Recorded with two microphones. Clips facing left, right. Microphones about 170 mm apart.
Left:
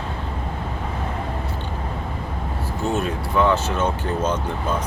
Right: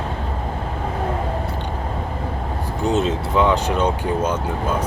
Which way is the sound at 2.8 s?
20° right (ahead or behind).